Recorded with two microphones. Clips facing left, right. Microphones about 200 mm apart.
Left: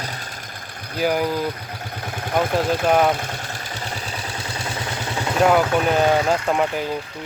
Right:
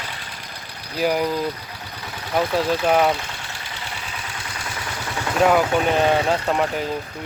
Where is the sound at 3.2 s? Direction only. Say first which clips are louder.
Left 4 dB; 45° left (ahead or behind); by 4.9 s 30° left (ahead or behind).